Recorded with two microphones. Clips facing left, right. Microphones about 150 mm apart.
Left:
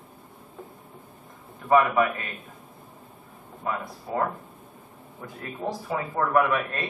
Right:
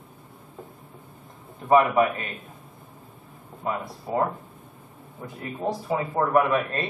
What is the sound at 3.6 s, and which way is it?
Speech, 20° right (ahead or behind).